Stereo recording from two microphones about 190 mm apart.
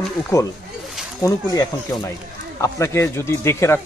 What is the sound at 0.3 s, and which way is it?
Speech, 15° left (ahead or behind).